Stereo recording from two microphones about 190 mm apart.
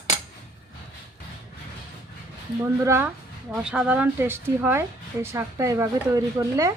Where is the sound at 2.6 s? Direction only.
15° right (ahead or behind).